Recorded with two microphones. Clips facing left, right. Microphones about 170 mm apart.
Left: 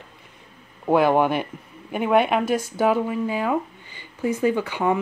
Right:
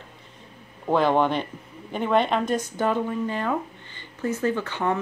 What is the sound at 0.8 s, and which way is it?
Speech, 10° left (ahead or behind).